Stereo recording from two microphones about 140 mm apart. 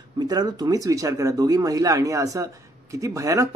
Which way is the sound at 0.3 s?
30° right (ahead or behind).